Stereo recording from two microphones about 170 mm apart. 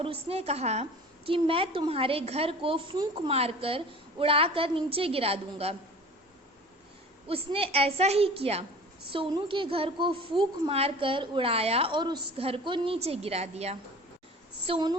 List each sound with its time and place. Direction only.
0.0 s a woman's voice: 35° right (ahead or behind)
7.3 s a woman's voice: 35° right (ahead or behind)
14.7 s a woman's voice: 25° right (ahead or behind)